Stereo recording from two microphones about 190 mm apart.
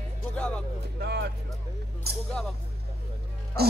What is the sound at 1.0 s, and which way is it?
Speech, 60° right (ahead or behind).